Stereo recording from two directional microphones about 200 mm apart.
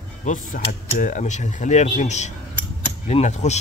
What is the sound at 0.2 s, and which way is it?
Speech, 40° left (ahead or behind).